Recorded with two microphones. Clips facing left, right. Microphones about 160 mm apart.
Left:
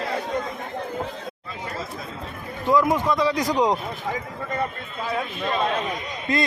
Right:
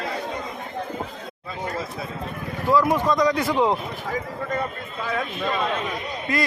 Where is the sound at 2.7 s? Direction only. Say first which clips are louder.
Even; 15° left (ahead or behind).